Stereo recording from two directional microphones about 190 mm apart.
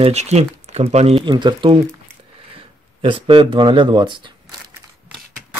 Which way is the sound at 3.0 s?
30° right (ahead or behind).